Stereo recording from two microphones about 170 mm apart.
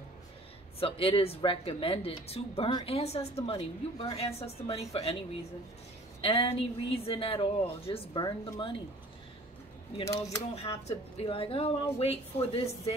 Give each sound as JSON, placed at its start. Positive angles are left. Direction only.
{"t": 0.7, "sound": "speech", "side_deg": 35}
{"t": 6.2, "sound": "speech", "side_deg": 35}
{"t": 10.0, "sound": "speech", "side_deg": 20}
{"t": 10.5, "sound": "speech", "side_deg": 35}